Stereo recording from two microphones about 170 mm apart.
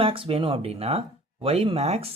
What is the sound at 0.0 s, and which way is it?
Speech, 30° right (ahead or behind).